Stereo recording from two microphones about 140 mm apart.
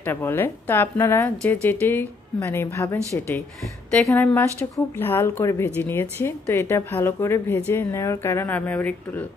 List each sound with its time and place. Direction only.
0.0 s a woman's voice: 15° left (ahead or behind)